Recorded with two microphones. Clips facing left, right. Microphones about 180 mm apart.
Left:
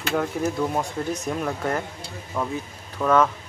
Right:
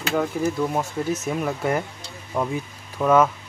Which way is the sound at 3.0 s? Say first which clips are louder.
Right 2 dB; 10° right (ahead or behind).